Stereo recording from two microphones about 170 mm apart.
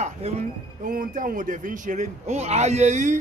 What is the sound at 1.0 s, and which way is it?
A man's voice, 55° right (ahead or behind).